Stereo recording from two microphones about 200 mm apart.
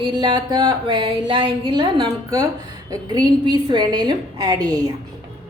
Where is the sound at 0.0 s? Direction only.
20° right (ahead or behind).